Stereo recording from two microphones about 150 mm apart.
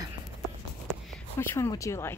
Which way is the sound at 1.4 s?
15° left (ahead or behind).